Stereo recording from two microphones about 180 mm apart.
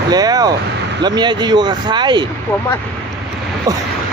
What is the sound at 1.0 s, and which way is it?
Speech, 25° right (ahead or behind).